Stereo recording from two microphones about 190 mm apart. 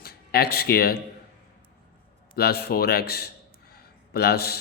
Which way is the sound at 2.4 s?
55° left (ahead or behind).